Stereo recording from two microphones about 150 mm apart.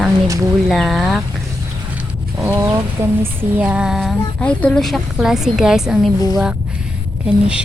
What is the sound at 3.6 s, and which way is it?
Speech, 10° right (ahead or behind).